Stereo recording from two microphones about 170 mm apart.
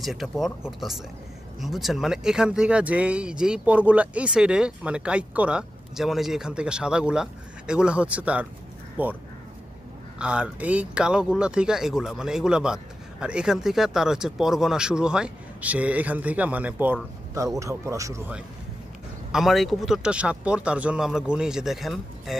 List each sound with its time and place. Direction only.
0.0 s speech: centre (ahead or behind); by 18.3 s 20° right (ahead or behind)
19.3 s speech: centre (ahead or behind)